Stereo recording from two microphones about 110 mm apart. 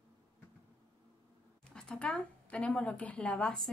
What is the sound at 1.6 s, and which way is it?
Speech, 10° left (ahead or behind).